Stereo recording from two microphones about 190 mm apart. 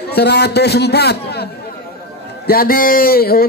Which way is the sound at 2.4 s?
50° left (ahead or behind).